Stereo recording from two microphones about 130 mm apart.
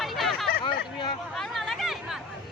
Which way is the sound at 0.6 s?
40° left (ahead or behind).